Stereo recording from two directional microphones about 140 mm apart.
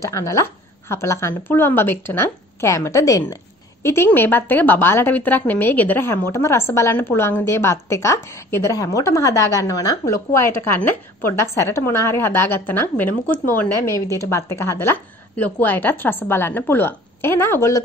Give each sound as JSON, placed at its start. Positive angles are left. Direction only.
{"t": 0.0, "sound": "a woman's voice", "side_deg": 20}